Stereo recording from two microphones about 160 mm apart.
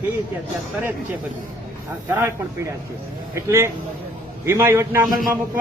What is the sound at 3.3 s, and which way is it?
A man's voice, 20° right (ahead or behind).